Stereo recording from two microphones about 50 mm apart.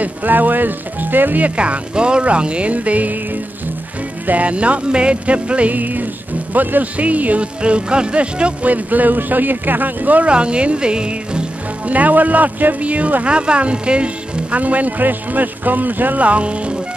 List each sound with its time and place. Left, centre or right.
0.0 s speech: right
1.6 s music: right
4.3 s music: right
6.5 s speech: right
10.3 s music: right
11.9 s speech: right